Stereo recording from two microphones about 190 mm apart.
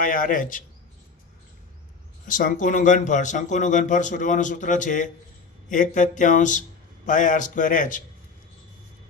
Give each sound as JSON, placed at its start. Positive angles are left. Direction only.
{"t": 0.0, "sound": "speech", "side_deg": 45}
{"t": 2.2, "sound": "speech", "side_deg": 45}